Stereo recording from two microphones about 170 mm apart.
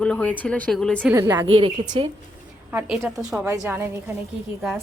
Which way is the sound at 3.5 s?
15° right (ahead or behind).